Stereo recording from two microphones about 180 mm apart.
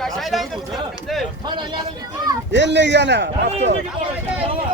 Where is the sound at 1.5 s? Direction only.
25° right (ahead or behind).